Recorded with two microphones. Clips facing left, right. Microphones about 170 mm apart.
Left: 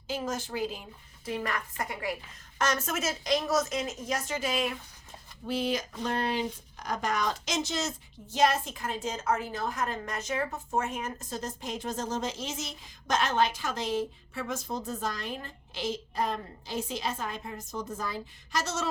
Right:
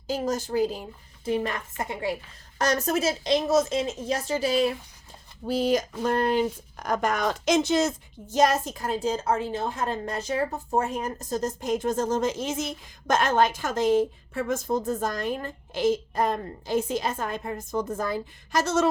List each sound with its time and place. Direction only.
0.1 s a woman's voice: 40° right (ahead or behind)
2.6 s speech: 35° right (ahead or behind); by 18.9 s 55° right (ahead or behind)